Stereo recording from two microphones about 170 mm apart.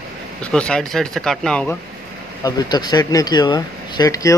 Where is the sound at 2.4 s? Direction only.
25° left (ahead or behind).